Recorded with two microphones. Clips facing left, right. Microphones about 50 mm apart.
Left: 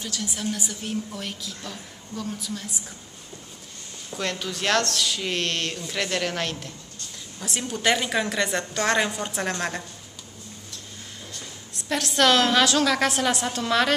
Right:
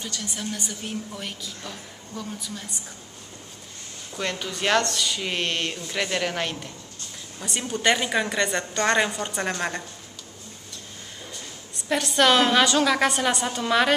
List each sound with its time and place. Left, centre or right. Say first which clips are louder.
0.0 s a woman's voice: left 2 dB; centre
4.1 s a woman's voice: even; centre
11.3 s a woman's voice: even; centre